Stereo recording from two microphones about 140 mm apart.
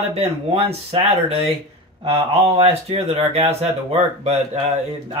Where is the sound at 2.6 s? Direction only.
45° right (ahead or behind).